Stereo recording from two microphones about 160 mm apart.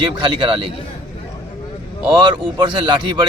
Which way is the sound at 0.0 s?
30° right (ahead or behind).